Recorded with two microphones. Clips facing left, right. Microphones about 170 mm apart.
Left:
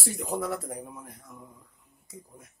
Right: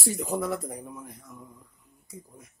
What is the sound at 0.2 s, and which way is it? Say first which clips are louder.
Speech: left 1 dB; centre (ahead or behind).